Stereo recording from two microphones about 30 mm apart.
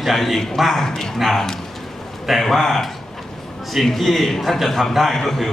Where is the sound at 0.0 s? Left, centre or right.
Centre.